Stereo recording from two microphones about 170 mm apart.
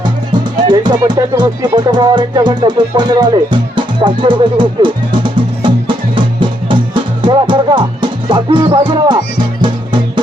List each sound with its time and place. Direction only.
0.7 s speech: 25° right (ahead or behind)
6.7 s music: 30° right (ahead or behind)